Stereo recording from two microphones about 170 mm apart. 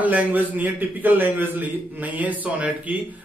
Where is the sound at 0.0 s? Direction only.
10° right (ahead or behind).